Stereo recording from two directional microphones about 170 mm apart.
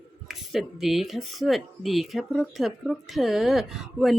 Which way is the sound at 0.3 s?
Centre (ahead or behind).